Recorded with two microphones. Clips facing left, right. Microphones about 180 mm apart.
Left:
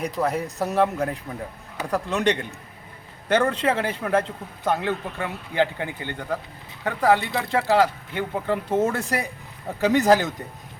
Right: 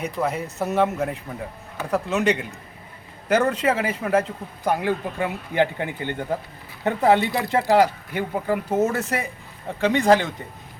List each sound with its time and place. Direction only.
0.0 s a man's voice: centre (ahead or behind)